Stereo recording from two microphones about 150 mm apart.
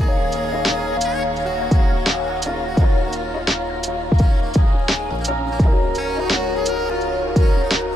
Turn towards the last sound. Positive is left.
turn(degrees=0)  # may be behind; listen again after turning